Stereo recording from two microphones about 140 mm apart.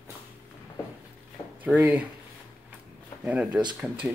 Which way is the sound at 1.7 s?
10° right (ahead or behind).